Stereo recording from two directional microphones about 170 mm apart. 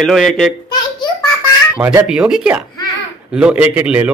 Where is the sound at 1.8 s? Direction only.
10° right (ahead or behind).